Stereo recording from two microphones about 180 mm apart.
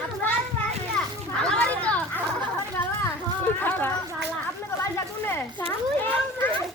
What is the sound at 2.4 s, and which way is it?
Chatter, 10° left (ahead or behind).